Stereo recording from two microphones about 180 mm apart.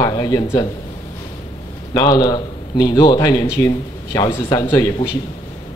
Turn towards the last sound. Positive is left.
turn(degrees=20)  # may be behind; listen again after turning